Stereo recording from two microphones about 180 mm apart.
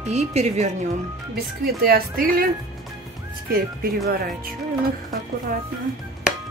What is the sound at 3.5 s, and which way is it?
Speech, 55° right (ahead or behind).